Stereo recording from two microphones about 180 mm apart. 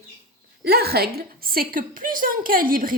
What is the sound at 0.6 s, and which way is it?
A woman's voice, 60° right (ahead or behind).